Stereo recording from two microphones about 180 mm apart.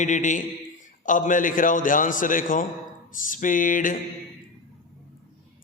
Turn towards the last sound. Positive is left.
turn(degrees=50)  # may be behind; listen again after turning